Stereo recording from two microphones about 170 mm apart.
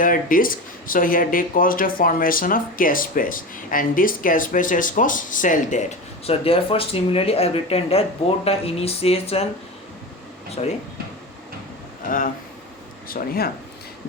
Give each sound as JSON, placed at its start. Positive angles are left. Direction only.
{"t": 0.0, "sound": "speech", "side_deg": 55}
{"t": 10.6, "sound": "speech", "side_deg": 40}
{"t": 13.1, "sound": "speech", "side_deg": 60}